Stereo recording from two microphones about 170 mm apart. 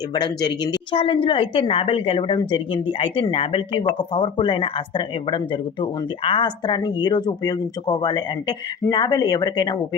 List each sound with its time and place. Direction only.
0.1 s speech: 25° left (ahead or behind)